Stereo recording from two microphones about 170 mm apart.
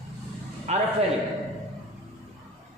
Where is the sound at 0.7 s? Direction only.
40° right (ahead or behind).